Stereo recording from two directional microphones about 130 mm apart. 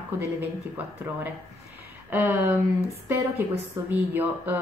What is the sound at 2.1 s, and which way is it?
Speech, 20° right (ahead or behind).